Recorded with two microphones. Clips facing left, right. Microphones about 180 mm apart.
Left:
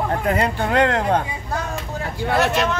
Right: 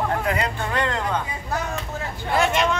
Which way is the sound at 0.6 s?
65° left (ahead or behind).